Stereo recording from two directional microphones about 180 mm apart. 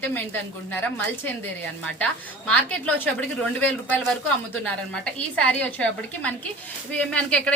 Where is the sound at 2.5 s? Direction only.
10° left (ahead or behind).